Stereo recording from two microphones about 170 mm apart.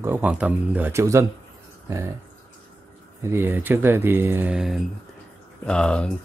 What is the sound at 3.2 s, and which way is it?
Speech, 15° right (ahead or behind).